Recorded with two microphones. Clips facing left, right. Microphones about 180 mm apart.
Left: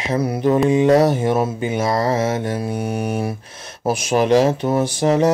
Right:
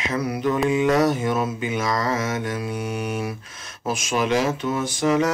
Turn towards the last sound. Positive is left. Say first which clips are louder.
# left 4 dB
turn(degrees=30)  # may be behind; listen again after turning